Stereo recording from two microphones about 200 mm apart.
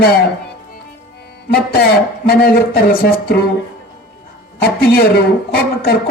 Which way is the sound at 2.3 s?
50° left (ahead or behind).